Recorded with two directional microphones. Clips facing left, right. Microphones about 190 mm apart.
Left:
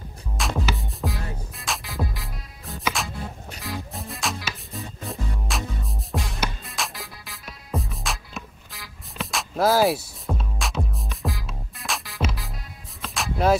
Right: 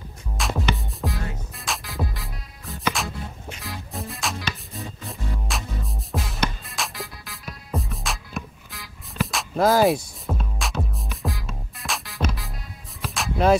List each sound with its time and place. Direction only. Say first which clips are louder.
0.4 s music: right 1 dB; centre (ahead or behind)